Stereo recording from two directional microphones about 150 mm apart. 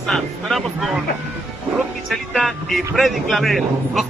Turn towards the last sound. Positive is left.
turn(degrees=0)  # may be behind; listen again after turning